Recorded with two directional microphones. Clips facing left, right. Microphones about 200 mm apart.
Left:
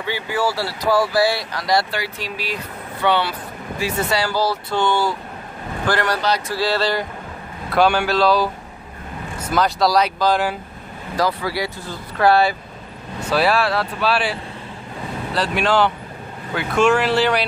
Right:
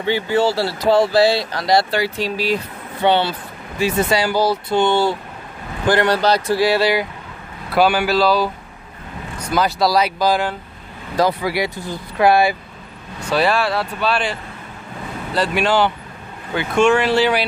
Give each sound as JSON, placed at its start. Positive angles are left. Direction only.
{"t": 0.0, "sound": "speech", "side_deg": -25}
{"t": 9.5, "sound": "speech", "side_deg": -5}
{"t": 11.1, "sound": "speech", "side_deg": -20}
{"t": 13.3, "sound": "speech", "side_deg": 0}